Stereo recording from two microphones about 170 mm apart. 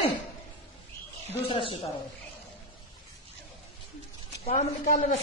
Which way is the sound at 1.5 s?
30° left (ahead or behind).